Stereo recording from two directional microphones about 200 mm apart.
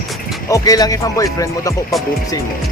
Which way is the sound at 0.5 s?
20° left (ahead or behind).